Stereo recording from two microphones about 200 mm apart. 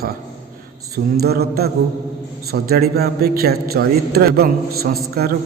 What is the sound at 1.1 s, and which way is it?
A man's voice, 50° right (ahead or behind).